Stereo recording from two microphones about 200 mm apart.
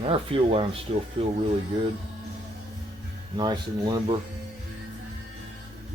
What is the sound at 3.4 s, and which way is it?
Speech, 20° right (ahead or behind).